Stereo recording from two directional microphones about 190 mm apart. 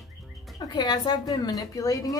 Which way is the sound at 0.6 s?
20° left (ahead or behind).